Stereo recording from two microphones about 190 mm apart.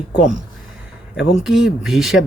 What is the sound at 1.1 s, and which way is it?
Speech, 5° right (ahead or behind).